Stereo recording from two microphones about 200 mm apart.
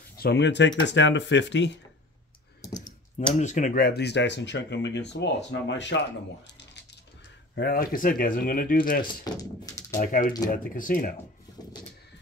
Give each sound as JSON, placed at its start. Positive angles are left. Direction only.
{"t": 0.2, "sound": "speech", "side_deg": 60}
{"t": 2.6, "sound": "computer keyboard", "side_deg": 15}
{"t": 3.3, "sound": "speech", "side_deg": 35}
{"t": 7.5, "sound": "speech", "side_deg": 50}
{"t": 9.0, "sound": "speech", "side_deg": 20}
{"t": 9.9, "sound": "speech", "side_deg": 40}